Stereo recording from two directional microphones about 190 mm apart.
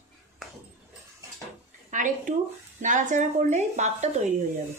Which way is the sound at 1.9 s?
45° right (ahead or behind).